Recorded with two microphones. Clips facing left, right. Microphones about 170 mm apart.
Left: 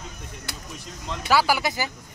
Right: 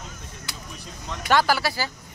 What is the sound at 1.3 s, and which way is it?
Speech, 10° left (ahead or behind).